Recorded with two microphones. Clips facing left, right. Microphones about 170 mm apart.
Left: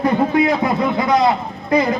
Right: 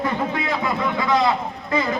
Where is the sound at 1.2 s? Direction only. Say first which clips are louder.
Left 4 dB; 40° left (ahead or behind).